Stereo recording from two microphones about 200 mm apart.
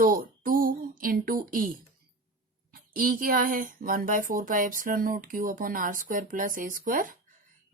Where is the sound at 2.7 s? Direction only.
45° right (ahead or behind).